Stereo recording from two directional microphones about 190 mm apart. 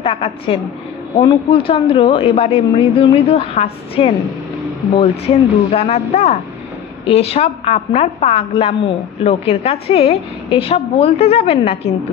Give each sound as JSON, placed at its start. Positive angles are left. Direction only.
{"t": 0.0, "sound": "a woman's voice", "side_deg": 30}